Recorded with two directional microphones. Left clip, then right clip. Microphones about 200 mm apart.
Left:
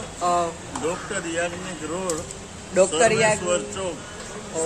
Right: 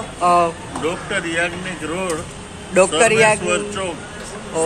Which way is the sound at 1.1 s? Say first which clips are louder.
Right 6 dB; 20° left (ahead or behind).